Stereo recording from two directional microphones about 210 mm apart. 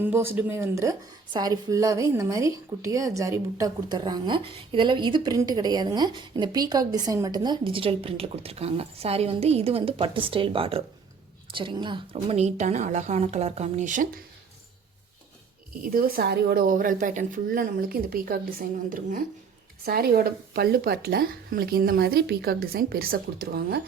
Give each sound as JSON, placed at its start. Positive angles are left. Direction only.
{"t": 0.0, "sound": "a woman's voice", "side_deg": -10}
{"t": 15.8, "sound": "speech", "side_deg": -45}